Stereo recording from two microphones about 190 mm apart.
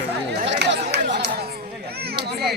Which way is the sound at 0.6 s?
60° right (ahead or behind).